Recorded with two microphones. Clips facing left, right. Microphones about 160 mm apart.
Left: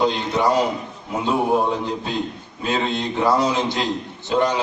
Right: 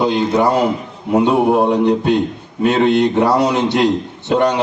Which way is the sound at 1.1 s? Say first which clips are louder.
Right 7 dB; 70° right (ahead or behind).